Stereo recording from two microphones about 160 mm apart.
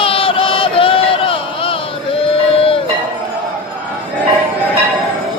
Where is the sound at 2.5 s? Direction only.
35° left (ahead or behind).